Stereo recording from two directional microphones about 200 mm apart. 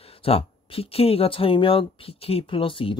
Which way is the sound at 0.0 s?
30° left (ahead or behind).